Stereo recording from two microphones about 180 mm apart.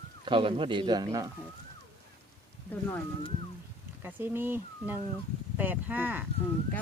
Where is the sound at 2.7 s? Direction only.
10° left (ahead or behind).